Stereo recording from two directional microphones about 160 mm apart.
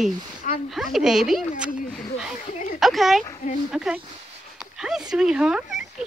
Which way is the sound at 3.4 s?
45° left (ahead or behind).